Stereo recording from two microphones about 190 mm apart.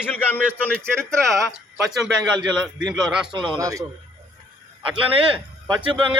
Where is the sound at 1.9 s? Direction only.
Centre (ahead or behind).